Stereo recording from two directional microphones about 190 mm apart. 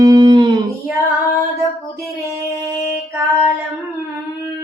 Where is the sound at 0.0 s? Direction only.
20° right (ahead or behind).